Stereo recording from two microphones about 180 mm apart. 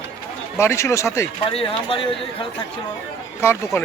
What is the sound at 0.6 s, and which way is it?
Speech, 15° left (ahead or behind).